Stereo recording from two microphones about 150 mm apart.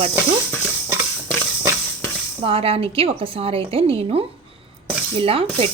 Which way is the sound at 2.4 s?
40° right (ahead or behind).